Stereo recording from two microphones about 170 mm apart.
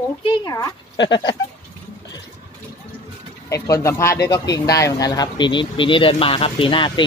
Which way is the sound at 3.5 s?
20° left (ahead or behind).